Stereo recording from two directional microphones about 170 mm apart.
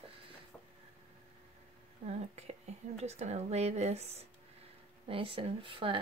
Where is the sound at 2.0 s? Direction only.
40° right (ahead or behind).